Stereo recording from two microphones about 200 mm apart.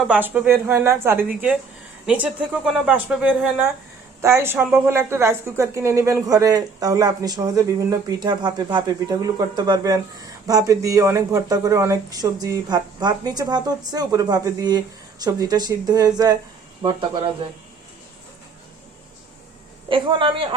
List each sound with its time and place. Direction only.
0.1 s a woman's voice: 10° right (ahead or behind); by 17.2 s 25° right (ahead or behind)
19.9 s a woman's voice: 25° right (ahead or behind)